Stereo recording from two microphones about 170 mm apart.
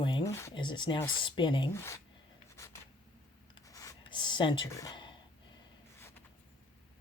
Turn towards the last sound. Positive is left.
turn(degrees=25)  # may be behind; listen again after turning